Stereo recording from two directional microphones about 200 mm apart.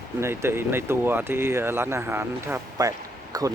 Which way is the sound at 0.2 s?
10° right (ahead or behind).